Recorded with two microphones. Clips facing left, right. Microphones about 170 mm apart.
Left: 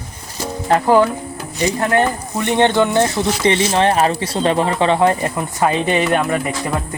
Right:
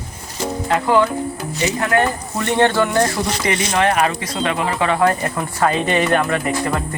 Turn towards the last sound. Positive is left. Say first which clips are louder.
# left 1 dB
turn(degrees=5)  # may be behind; listen again after turning